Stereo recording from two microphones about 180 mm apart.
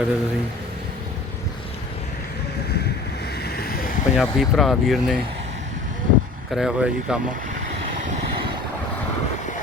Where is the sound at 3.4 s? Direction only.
60° left (ahead or behind).